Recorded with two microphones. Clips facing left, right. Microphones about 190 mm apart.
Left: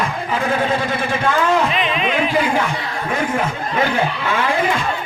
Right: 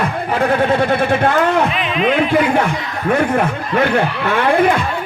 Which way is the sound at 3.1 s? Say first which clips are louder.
Right 6 dB; 60° right (ahead or behind).